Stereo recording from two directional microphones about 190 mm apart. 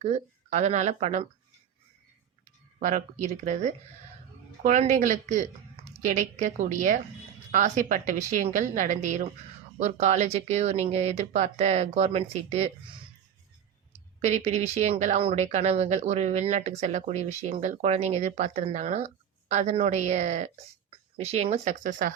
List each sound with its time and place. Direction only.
0.0 s speech: 35° right (ahead or behind)
2.4 s speech: 40° right (ahead or behind)
14.2 s speech: 35° right (ahead or behind)